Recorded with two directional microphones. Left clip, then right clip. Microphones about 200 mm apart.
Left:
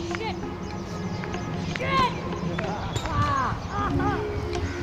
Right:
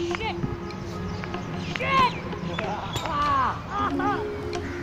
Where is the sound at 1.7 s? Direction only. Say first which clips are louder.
Right 2 dB; 10° right (ahead or behind).